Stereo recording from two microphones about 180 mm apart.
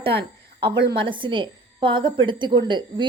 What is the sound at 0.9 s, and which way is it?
A woman's voice, 30° right (ahead or behind).